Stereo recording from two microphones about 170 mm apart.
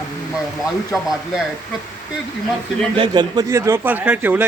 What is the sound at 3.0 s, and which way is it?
Speech, 25° right (ahead or behind).